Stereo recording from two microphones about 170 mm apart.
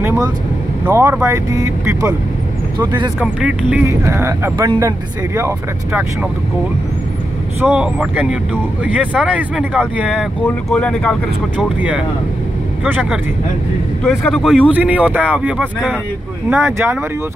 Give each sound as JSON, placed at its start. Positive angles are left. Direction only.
{"t": 0.8, "sound": "speech", "side_deg": -15}
{"t": 3.2, "sound": "speech", "side_deg": -5}
{"t": 7.6, "sound": "speech", "side_deg": -5}
{"t": 10.0, "sound": "speech", "side_deg": 5}
{"t": 12.8, "sound": "speech", "side_deg": -10}